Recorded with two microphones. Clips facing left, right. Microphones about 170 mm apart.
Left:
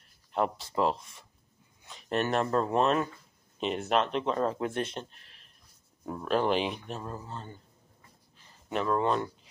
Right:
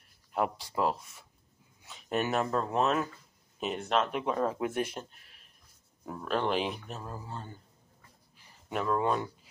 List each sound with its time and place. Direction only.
0.3 s speech: 10° right (ahead or behind)
4.1 s speech: 10° right (ahead or behind)
6.1 s speech: 5° left (ahead or behind)
8.5 s a sound: 10° right (ahead or behind)
8.8 s speech: 10° right (ahead or behind)